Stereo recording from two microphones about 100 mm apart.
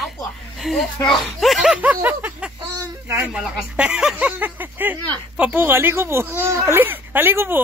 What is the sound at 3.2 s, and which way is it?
Speech, 10° right (ahead or behind).